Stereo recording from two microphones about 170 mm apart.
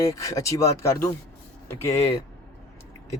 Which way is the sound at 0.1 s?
20° left (ahead or behind).